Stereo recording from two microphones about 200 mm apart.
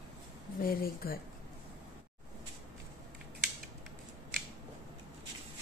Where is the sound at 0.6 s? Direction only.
45° left (ahead or behind).